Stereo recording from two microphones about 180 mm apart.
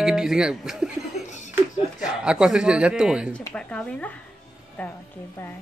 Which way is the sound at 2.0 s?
5° right (ahead or behind).